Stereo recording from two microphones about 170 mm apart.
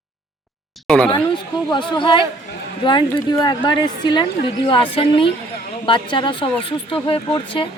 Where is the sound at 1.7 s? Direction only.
30° left (ahead or behind).